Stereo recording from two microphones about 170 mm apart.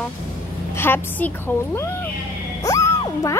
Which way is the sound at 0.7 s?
10° left (ahead or behind).